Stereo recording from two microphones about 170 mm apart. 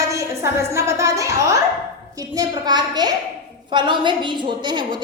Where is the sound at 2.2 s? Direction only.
20° right (ahead or behind).